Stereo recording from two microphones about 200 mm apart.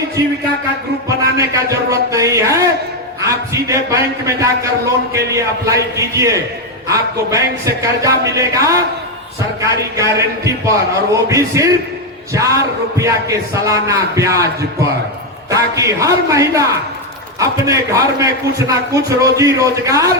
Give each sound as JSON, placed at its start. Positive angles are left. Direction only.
{"t": 1.0, "sound": "a man's voice", "side_deg": -15}